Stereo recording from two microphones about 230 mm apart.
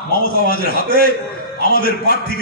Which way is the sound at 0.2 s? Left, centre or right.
Left.